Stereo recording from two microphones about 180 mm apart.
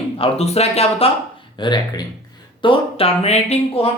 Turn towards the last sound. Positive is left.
turn(degrees=35)  # may be behind; listen again after turning